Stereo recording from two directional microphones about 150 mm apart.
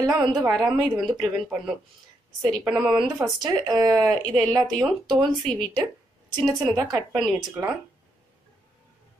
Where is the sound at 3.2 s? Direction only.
25° right (ahead or behind).